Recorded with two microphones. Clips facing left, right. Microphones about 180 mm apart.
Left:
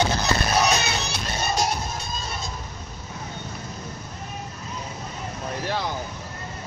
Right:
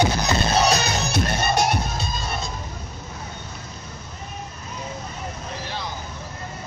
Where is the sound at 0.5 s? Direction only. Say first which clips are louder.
Right 2 dB; 35° right (ahead or behind); by 2.2 s 70° right (ahead or behind).